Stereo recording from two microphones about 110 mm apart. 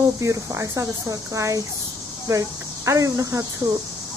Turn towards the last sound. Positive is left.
turn(degrees=-30)  # may be behind; listen again after turning